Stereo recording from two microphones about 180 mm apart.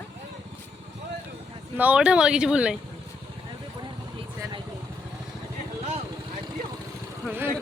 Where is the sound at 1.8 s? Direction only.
5° right (ahead or behind).